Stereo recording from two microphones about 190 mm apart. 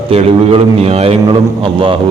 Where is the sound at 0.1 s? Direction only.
30° right (ahead or behind).